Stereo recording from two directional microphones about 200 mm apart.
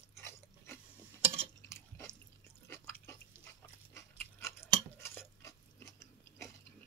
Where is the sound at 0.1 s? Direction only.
15° left (ahead or behind).